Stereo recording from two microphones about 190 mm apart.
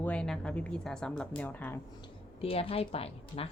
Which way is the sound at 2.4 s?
30° left (ahead or behind).